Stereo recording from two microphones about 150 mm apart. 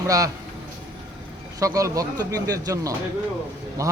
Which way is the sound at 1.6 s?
20° right (ahead or behind).